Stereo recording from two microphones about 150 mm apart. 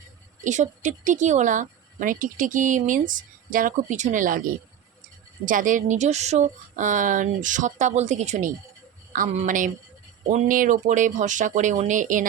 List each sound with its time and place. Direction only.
0.4 s speech: 55° right (ahead or behind)
5.5 s speech: 60° right (ahead or behind)